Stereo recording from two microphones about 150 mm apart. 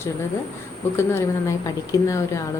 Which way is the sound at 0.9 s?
20° left (ahead or behind).